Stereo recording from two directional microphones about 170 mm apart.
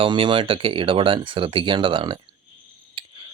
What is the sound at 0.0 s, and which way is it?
Speech, 30° right (ahead or behind).